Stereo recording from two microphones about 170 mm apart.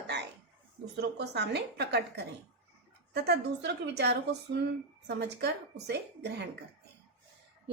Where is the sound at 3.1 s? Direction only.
75° right (ahead or behind).